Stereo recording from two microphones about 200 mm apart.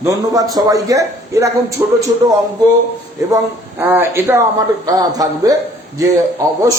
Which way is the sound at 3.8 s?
10° right (ahead or behind).